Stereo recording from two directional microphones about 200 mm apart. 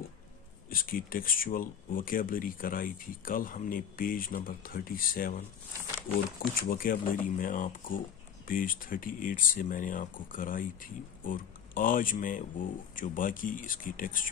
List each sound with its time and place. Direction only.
0.7 s speech: 45° left (ahead or behind)
6.7 s speech: 45° left (ahead or behind)